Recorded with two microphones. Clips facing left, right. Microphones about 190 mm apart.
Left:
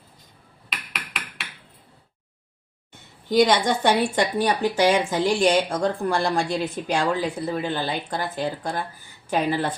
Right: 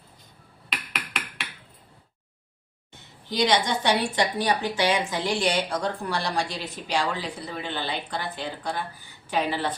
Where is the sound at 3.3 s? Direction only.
50° left (ahead or behind).